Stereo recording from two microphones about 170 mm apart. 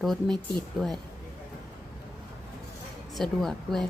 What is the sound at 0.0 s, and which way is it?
Speech, centre (ahead or behind).